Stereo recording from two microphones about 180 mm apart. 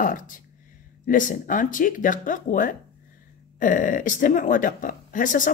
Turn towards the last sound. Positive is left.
turn(degrees=50)  # may be behind; listen again after turning